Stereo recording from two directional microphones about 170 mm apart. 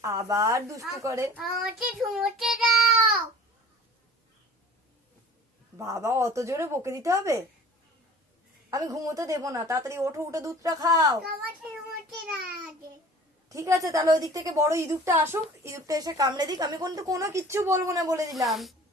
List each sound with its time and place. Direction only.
0.0 s speech: 15° right (ahead or behind)
2.0 s a child's voice: centre (ahead or behind)
5.7 s speech: 20° right (ahead or behind)
8.7 s a woman's voice: 20° right (ahead or behind)
13.5 s a woman's voice: 20° right (ahead or behind)
18.4 s a child's voice: centre (ahead or behind)